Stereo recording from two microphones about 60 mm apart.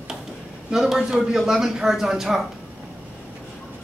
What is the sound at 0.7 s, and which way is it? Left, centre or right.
Speech, centre.